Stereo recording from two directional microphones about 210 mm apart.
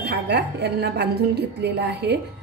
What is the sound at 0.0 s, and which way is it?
A woman's voice, 50° right (ahead or behind).